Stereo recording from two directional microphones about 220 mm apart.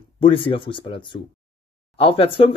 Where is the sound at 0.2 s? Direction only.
25° left (ahead or behind).